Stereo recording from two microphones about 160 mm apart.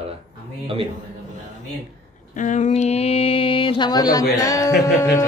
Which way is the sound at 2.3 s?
50° left (ahead or behind).